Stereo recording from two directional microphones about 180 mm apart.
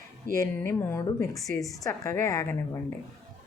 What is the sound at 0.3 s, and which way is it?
A woman's voice, 15° left (ahead or behind).